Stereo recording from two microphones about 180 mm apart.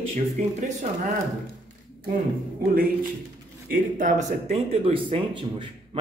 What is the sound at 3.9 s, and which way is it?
Speech, 40° right (ahead or behind).